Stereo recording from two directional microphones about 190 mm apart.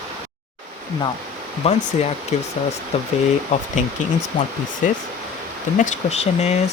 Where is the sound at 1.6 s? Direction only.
35° left (ahead or behind).